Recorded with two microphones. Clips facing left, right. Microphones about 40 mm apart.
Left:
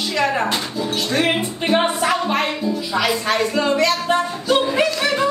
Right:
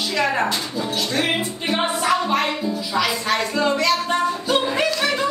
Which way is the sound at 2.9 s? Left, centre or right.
Centre.